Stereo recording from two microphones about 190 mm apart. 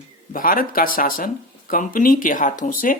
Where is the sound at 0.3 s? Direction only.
45° left (ahead or behind).